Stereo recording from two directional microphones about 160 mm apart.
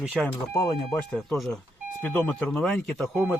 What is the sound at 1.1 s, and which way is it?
Speech, 5° left (ahead or behind).